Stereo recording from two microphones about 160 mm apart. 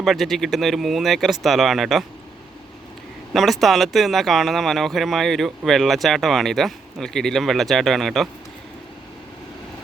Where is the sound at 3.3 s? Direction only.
Centre (ahead or behind).